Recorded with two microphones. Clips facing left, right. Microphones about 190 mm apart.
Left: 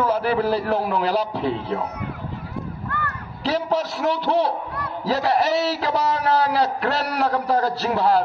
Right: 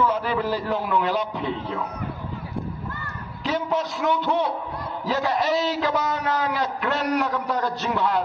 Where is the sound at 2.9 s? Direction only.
65° left (ahead or behind).